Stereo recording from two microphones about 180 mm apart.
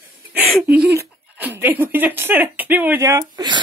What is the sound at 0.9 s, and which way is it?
Speech, 10° right (ahead or behind).